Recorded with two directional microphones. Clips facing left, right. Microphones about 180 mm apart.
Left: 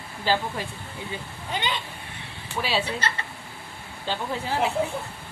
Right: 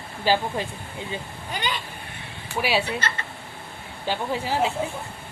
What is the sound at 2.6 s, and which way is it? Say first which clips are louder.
Speech: right 3 dB; 15° right (ahead or behind).